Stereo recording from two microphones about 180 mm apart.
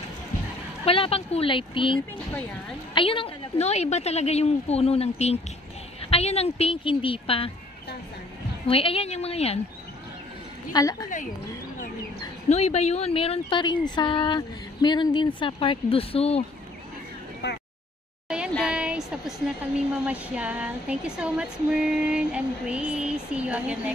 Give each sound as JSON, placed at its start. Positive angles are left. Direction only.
{"t": 0.8, "sound": "a woman's voice", "side_deg": 30}
{"t": 8.6, "sound": "a woman's voice", "side_deg": 30}
{"t": 10.7, "sound": "speech", "side_deg": 20}
{"t": 12.4, "sound": "speech", "side_deg": 35}
{"t": 17.4, "sound": "a sound", "side_deg": 70}
{"t": 18.5, "sound": "speech", "side_deg": -5}